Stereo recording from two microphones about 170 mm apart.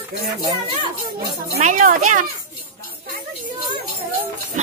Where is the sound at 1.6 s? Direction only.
50° right (ahead or behind).